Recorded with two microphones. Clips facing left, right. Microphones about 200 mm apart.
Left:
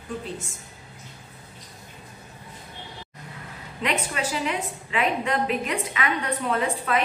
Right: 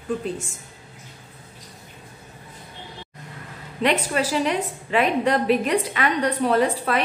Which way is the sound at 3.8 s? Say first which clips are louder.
Right 5 dB; 40° right (ahead or behind).